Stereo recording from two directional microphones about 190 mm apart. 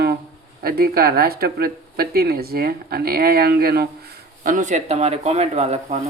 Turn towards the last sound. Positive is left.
turn(degrees=-35)  # may be behind; listen again after turning